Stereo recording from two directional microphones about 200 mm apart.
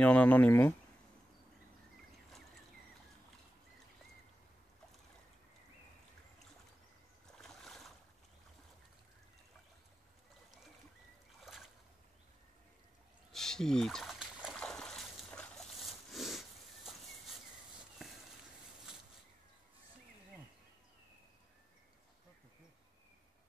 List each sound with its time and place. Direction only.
0.0 s speech: 5° left (ahead or behind)
7.4 s boat: centre (ahead or behind)
11.4 s a sound: centre (ahead or behind)
13.3 s trickle: centre (ahead or behind)